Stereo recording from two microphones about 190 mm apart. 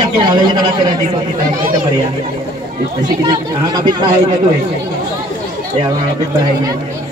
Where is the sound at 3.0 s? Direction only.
25° right (ahead or behind).